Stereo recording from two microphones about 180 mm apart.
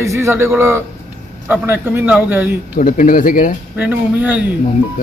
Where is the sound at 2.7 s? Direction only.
45° left (ahead or behind).